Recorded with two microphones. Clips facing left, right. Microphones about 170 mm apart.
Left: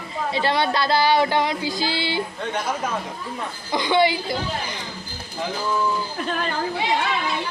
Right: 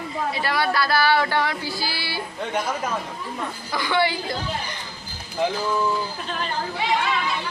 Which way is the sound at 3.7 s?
20° left (ahead or behind).